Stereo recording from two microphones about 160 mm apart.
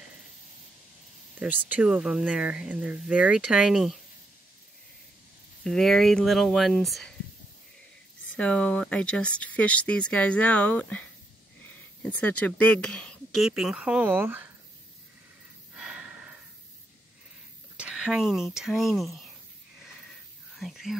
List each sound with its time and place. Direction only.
1.7 s speech: 5° right (ahead or behind)
5.6 s speech: 5° left (ahead or behind)
8.4 s speech: 5° left (ahead or behind); by 14.5 s 10° right (ahead or behind)
15.7 s gasp: 5° right (ahead or behind)
17.7 s speech: 5° right (ahead or behind)
20.5 s speech: centre (ahead or behind)